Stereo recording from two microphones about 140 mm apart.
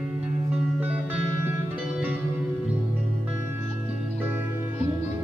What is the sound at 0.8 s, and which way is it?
Music, 10° right (ahead or behind).